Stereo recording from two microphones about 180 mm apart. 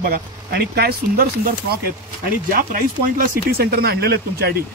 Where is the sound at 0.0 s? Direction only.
60° right (ahead or behind).